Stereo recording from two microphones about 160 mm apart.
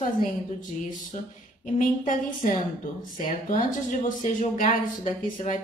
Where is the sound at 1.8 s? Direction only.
55° left (ahead or behind).